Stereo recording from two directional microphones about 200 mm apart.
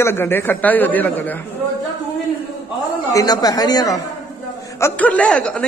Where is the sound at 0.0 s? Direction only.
10° left (ahead or behind).